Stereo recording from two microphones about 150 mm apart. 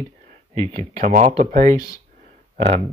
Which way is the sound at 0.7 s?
55° right (ahead or behind).